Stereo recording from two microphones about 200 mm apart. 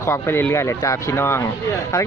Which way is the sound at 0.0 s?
10° left (ahead or behind).